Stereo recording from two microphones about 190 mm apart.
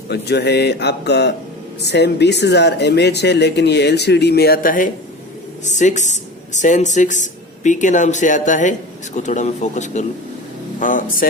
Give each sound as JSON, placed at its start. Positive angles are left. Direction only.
{"t": 0.1, "sound": "speech", "side_deg": 60}